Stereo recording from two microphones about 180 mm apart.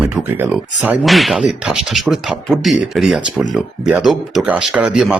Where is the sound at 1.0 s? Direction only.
Centre (ahead or behind).